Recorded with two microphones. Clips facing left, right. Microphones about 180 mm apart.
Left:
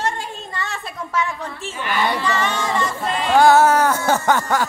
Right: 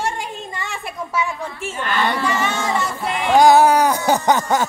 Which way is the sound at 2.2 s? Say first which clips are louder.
Right 1 dB; 10° right (ahead or behind).